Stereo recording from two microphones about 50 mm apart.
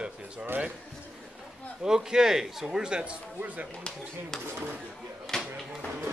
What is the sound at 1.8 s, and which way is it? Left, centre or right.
A man's voice, centre.